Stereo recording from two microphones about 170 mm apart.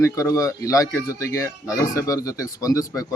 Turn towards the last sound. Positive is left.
turn(degrees=20)  # may be behind; listen again after turning